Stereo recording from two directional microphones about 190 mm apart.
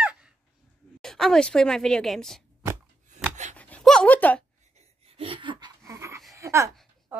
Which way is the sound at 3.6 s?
5° left (ahead or behind).